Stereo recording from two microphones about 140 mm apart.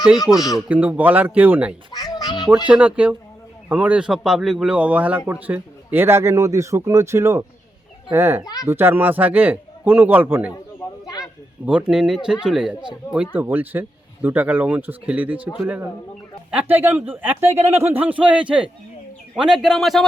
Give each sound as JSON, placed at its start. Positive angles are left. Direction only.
{"t": 0.3, "sound": "a man's voice", "side_deg": 0}
{"t": 1.9, "sound": "music", "side_deg": 30}
{"t": 2.6, "sound": "a man's voice", "side_deg": -10}
{"t": 11.0, "sound": "a sound", "side_deg": 25}
{"t": 11.6, "sound": "a man's voice", "side_deg": -5}